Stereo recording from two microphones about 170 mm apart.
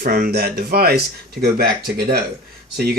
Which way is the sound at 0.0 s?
60° right (ahead or behind).